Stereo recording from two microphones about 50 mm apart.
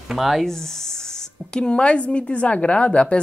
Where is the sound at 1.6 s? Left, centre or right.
Left.